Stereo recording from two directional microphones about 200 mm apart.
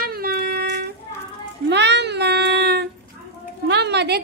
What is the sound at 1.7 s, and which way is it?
Child singing, 60° right (ahead or behind).